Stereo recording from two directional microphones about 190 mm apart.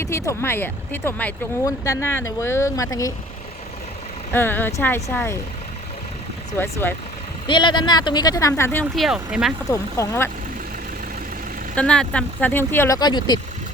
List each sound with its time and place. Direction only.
0.0 s speech: 15° left (ahead or behind)
4.3 s speech: 10° left (ahead or behind)
6.6 s speech: 10° left (ahead or behind)
7.4 s speech: 25° left (ahead or behind)
9.0 s speech: 5° right (ahead or behind)
9.6 s speech: 15° left (ahead or behind)
11.7 s speech: 5° left (ahead or behind); by 13.4 s 20° left (ahead or behind)